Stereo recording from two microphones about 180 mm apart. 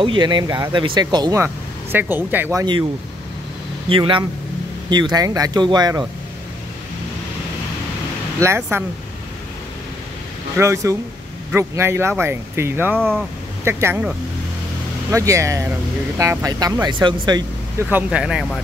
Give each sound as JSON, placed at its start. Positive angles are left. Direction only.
{"t": 0.0, "sound": "speech", "side_deg": -25}
{"t": 3.9, "sound": "speech", "side_deg": -30}
{"t": 8.4, "sound": "speech", "side_deg": -15}
{"t": 10.6, "sound": "speech", "side_deg": -15}
{"t": 12.9, "sound": "speech", "side_deg": 5}
{"t": 13.7, "sound": "speech", "side_deg": -15}
{"t": 17.8, "sound": "speech", "side_deg": -5}